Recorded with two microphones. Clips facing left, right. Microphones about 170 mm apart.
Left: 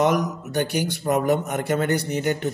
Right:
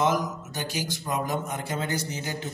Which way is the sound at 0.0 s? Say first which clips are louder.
Left 4 dB; 65° left (ahead or behind).